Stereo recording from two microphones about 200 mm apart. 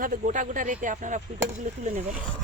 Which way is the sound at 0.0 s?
40° right (ahead or behind).